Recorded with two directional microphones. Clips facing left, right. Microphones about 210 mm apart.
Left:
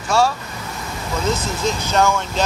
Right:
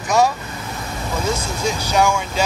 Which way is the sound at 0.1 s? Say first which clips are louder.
Right 1 dB; 20° right (ahead or behind).